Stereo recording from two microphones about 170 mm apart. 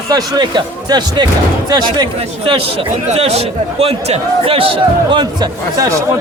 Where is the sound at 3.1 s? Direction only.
35° right (ahead or behind).